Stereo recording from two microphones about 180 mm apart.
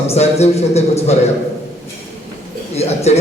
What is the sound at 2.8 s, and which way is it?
Speech, 35° left (ahead or behind).